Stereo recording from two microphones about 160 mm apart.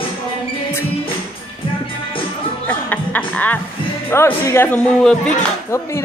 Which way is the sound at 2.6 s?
10° left (ahead or behind).